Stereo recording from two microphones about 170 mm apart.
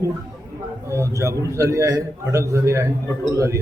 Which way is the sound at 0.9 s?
15° right (ahead or behind).